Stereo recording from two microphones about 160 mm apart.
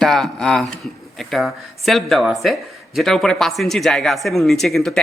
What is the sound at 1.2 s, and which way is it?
Speech, centre (ahead or behind).